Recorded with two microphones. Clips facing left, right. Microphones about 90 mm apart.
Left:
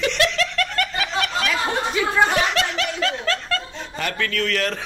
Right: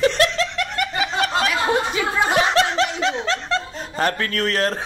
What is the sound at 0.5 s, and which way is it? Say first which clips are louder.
Snicker: even; 20° right (ahead or behind).